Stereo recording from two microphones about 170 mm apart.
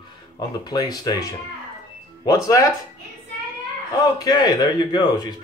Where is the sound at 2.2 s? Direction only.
20° left (ahead or behind).